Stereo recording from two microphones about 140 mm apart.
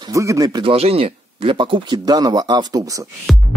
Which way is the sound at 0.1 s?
25° right (ahead or behind).